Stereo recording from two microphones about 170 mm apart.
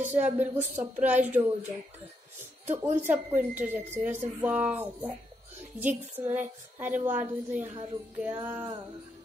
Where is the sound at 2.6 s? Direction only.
10° right (ahead or behind).